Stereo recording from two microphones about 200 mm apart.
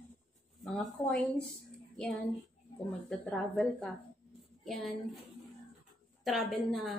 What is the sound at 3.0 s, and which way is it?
A woman's voice, 5° left (ahead or behind).